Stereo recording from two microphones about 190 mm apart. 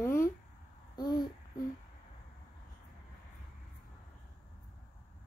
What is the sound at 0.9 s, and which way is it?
Babbling, 20° left (ahead or behind).